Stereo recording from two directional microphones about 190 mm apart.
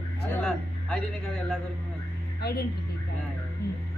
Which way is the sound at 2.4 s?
60° left (ahead or behind).